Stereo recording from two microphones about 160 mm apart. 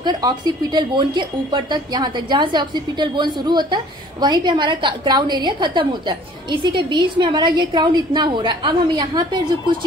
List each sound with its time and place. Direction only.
0.0 s a woman's voice: 25° right (ahead or behind)